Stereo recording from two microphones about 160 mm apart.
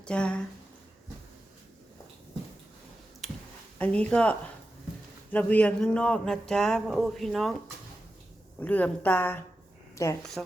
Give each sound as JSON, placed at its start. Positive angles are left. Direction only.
{"t": 0.0, "sound": "speech", "side_deg": 5}
{"t": 3.8, "sound": "speech", "side_deg": 10}
{"t": 8.6, "sound": "a woman's voice", "side_deg": 10}
{"t": 10.4, "sound": "speech", "side_deg": 0}